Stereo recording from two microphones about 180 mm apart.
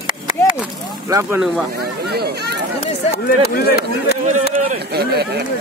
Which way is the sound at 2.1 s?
60° right (ahead or behind).